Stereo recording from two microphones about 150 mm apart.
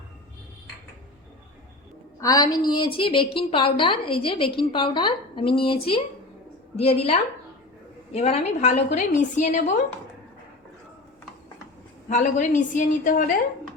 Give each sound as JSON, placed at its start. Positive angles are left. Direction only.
{"t": 2.2, "sound": "a woman's voice", "side_deg": 25}
{"t": 12.0, "sound": "a woman's voice", "side_deg": 55}